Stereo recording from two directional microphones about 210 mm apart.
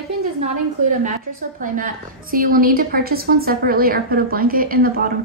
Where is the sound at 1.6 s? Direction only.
40° right (ahead or behind).